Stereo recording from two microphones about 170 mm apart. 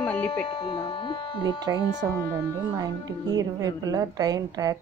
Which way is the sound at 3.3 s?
20° right (ahead or behind).